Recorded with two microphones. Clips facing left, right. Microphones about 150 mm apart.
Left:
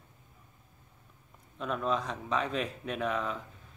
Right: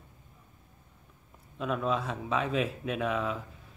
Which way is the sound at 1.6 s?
5° right (ahead or behind).